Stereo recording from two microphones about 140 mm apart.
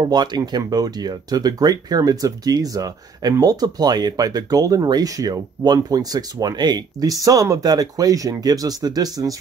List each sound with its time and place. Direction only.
0.0 s speech: 30° right (ahead or behind)